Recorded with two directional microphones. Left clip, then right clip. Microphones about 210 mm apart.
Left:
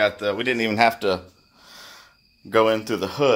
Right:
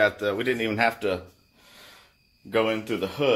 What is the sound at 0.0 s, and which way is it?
Speech, 10° left (ahead or behind).